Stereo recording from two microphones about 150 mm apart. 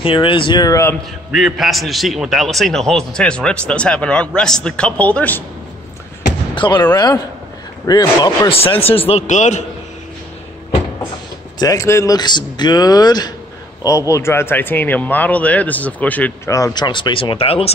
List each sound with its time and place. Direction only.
0.0 s speech: 35° left (ahead or behind)
1.3 s a man's voice: centre (ahead or behind)
6.5 s speech: 30° left (ahead or behind)
7.8 s speech: 25° left (ahead or behind)
8.5 s speech: 40° left (ahead or behind)
11.6 s speech: 20° left (ahead or behind)
16.5 s speech: 25° left (ahead or behind); by 17.7 s 40° left (ahead or behind)